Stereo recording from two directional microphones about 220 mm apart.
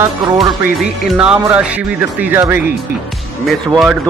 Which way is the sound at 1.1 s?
5° right (ahead or behind).